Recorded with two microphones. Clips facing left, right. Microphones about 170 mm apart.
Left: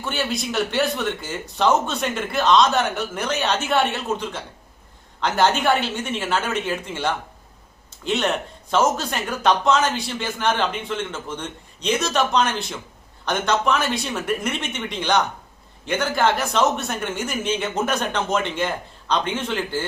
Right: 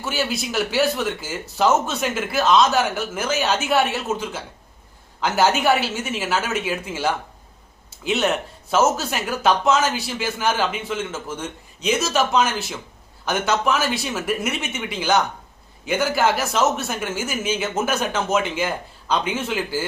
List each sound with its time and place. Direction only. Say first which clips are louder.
0.0 s a man's voice: right 1 dB; 5° right (ahead or behind)